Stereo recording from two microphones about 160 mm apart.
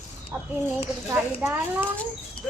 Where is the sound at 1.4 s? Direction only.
15° right (ahead or behind).